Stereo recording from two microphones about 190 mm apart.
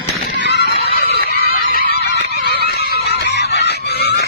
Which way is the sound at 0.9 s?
55° left (ahead or behind).